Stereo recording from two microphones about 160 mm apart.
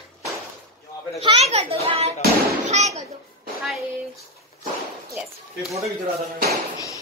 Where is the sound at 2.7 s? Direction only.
45° right (ahead or behind).